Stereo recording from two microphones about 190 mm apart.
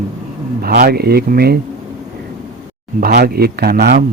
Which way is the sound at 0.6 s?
55° right (ahead or behind).